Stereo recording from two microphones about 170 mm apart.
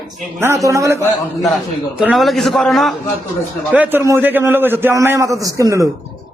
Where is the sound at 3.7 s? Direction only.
10° right (ahead or behind).